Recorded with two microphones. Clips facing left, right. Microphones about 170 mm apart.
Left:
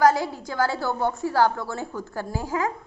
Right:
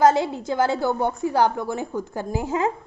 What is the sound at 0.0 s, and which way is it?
A woman's voice, 25° right (ahead or behind).